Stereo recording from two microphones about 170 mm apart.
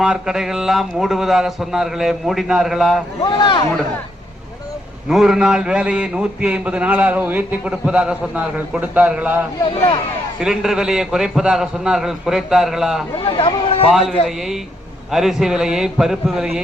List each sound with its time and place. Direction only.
0.0 s a man's voice: 5° right (ahead or behind)
3.2 s speech: 25° left (ahead or behind)
5.0 s a man's voice: 5° right (ahead or behind)
9.6 s speech: 30° left (ahead or behind)
10.4 s a man's voice: 5° right (ahead or behind)
13.1 s speech: 30° left (ahead or behind)
14.3 s a man's voice: centre (ahead or behind)